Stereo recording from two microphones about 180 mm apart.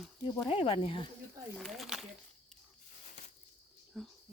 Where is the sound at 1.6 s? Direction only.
Centre (ahead or behind).